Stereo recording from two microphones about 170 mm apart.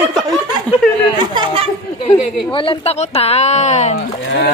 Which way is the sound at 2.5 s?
30° left (ahead or behind).